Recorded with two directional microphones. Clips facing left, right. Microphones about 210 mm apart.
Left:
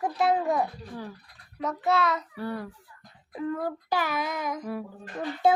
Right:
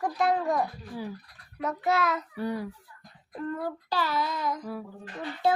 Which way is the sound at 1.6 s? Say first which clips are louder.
Left 1 dB; 10° right (ahead or behind).